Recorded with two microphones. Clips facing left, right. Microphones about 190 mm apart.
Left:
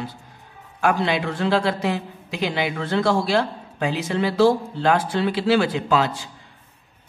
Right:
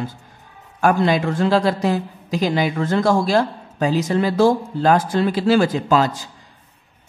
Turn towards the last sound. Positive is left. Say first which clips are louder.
# right 3 dB
turn(degrees=-40)  # may be behind; listen again after turning